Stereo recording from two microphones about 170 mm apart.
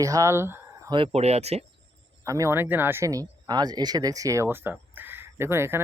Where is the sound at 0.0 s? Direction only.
20° right (ahead or behind).